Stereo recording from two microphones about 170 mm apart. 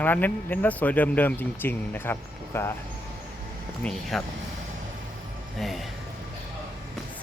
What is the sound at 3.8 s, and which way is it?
Speech, 5° left (ahead or behind).